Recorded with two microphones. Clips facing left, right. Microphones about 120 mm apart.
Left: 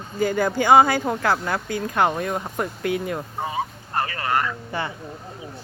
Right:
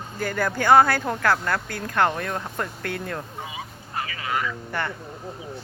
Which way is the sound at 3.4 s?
50° left (ahead or behind).